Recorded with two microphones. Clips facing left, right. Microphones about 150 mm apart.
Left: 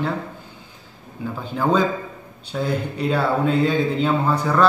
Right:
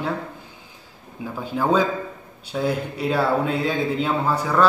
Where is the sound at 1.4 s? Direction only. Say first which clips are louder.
Even; 5° right (ahead or behind).